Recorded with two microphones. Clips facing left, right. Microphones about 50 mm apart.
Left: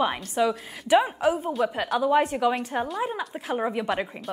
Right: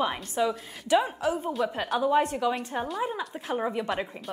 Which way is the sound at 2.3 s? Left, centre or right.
Left.